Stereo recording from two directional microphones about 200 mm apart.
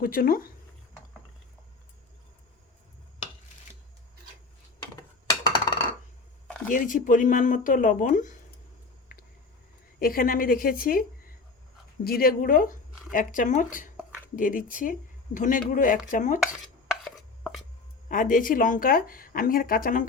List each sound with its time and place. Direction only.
0.0 s speech: 45° left (ahead or behind)
4.9 s a sound: 20° left (ahead or behind)
6.7 s speech: 40° left (ahead or behind)
10.0 s speech: 45° left (ahead or behind)
12.0 s speech: 50° left (ahead or behind)
16.9 s chopping: centre (ahead or behind)
18.1 s speech: 40° left (ahead or behind)